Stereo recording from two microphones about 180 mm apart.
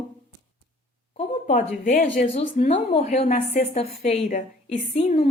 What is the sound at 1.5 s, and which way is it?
Speech, 45° left (ahead or behind).